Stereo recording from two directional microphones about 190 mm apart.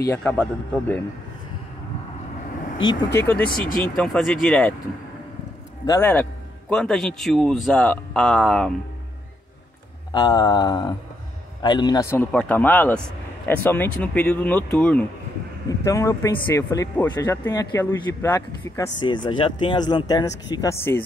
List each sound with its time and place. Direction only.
0.0 s speech: 10° left (ahead or behind)
2.8 s speech: 20° left (ahead or behind)
3.4 s speech: 50° left (ahead or behind)
3.9 s speech: centre (ahead or behind)
5.9 s speech: 10° left (ahead or behind)
10.1 s speech: 20° left (ahead or behind)
19.2 s speech: 25° left (ahead or behind)